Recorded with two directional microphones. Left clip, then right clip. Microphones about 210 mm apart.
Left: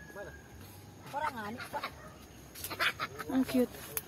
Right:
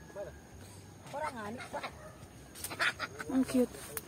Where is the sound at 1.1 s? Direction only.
45° left (ahead or behind).